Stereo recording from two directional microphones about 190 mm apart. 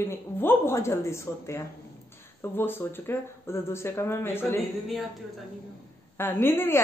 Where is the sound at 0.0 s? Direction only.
10° left (ahead or behind).